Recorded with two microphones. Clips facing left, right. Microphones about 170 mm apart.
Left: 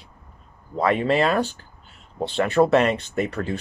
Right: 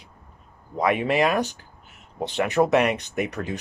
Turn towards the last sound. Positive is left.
turn(degrees=-15)  # may be behind; listen again after turning